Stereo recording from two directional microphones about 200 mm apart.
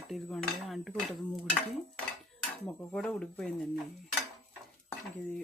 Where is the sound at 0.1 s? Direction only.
Centre (ahead or behind).